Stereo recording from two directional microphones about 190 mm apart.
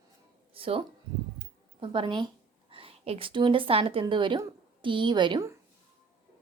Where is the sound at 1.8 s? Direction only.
25° right (ahead or behind).